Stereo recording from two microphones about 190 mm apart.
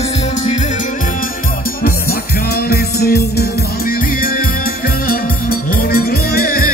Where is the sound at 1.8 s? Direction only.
55° left (ahead or behind).